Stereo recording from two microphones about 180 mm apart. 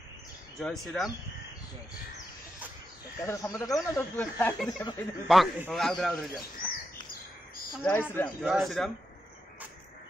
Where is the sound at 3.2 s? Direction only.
15° left (ahead or behind).